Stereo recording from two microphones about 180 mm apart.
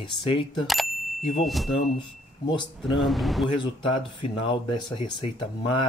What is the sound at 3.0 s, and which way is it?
Speech, centre (ahead or behind).